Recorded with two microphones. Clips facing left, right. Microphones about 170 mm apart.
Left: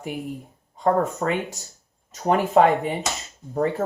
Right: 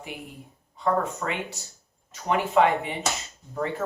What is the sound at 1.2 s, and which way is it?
Speech, 40° left (ahead or behind).